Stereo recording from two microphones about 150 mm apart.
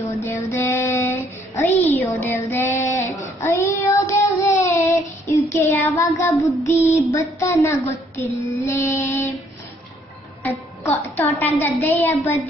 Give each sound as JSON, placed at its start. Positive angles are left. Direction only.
{"t": 0.2, "sound": "child singing", "side_deg": 15}
{"t": 1.8, "sound": "a woman's voice", "side_deg": 15}
{"t": 3.3, "sound": "child singing", "side_deg": 15}
{"t": 8.2, "sound": "a woman's voice", "side_deg": 15}
{"t": 10.8, "sound": "a woman's voice", "side_deg": 15}